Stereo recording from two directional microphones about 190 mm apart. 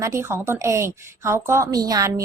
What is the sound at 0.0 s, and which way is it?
A woman's voice, 15° right (ahead or behind).